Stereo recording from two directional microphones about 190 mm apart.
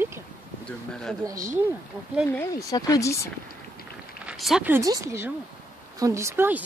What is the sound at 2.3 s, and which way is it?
Speech, 15° left (ahead or behind).